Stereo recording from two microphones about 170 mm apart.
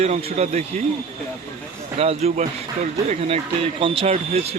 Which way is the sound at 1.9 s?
35° right (ahead or behind).